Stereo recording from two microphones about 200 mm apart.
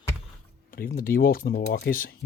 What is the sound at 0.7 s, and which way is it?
Speech, 45° left (ahead or behind).